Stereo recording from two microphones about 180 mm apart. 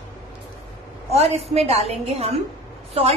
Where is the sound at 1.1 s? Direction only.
35° right (ahead or behind).